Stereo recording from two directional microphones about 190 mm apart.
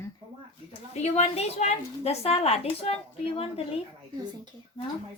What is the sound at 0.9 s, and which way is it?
A woman's voice, 35° left (ahead or behind).